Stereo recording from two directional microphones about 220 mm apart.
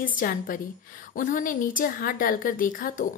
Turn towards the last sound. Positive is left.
turn(degrees=40)  # may be behind; listen again after turning